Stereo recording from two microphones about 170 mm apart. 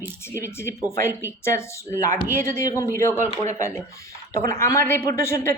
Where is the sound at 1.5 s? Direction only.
15° left (ahead or behind).